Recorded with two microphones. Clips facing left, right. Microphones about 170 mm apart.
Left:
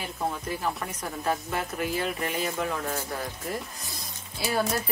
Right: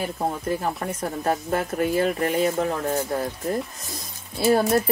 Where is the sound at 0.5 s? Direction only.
45° right (ahead or behind).